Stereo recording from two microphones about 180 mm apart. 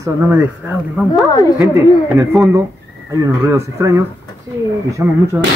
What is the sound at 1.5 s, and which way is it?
A woman's voice, 15° right (ahead or behind).